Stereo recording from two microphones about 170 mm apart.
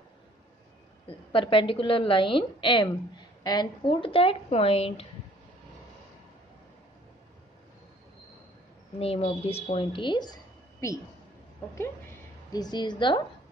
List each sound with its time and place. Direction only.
1.0 s a woman's voice: 30° left (ahead or behind)
9.0 s a woman's voice: 35° left (ahead or behind)
12.5 s a woman's voice: 25° left (ahead or behind)